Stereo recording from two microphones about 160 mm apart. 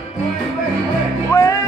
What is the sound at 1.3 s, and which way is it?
Music, 20° left (ahead or behind).